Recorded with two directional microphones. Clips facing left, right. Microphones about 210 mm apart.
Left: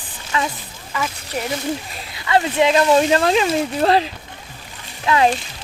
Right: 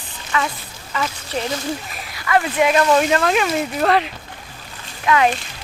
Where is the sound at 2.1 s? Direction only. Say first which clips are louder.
Left 1 dB; 25° left (ahead or behind).